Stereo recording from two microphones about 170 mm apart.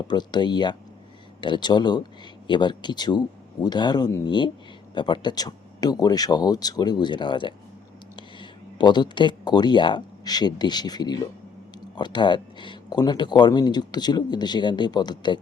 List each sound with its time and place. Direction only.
0.1 s speech: 25° left (ahead or behind)